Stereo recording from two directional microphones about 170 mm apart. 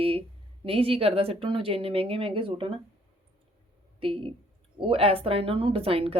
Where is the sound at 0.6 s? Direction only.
35° right (ahead or behind).